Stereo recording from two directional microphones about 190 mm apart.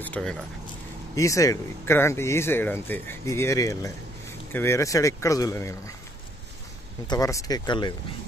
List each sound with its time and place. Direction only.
0.0 s speech: 5° left (ahead or behind)
7.1 s speech: 15° left (ahead or behind)